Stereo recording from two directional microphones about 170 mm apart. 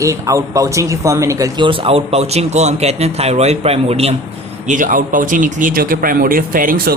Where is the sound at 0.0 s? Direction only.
20° right (ahead or behind); by 4.1 s 35° right (ahead or behind).